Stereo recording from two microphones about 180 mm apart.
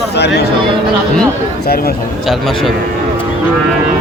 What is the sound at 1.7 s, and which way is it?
Speech, 55° left (ahead or behind).